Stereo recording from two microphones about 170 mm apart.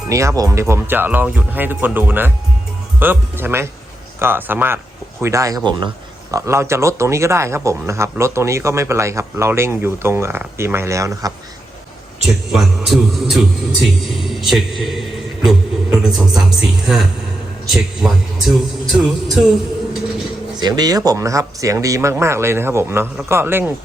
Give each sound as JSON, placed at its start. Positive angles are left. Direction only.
{"t": 0.1, "sound": "speech", "side_deg": -15}
{"t": 12.5, "sound": "a man's voice", "side_deg": 0}
{"t": 20.6, "sound": "speech", "side_deg": -25}